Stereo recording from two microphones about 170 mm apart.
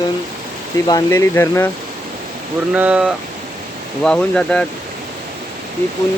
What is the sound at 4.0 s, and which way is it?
Speech, 5° left (ahead or behind).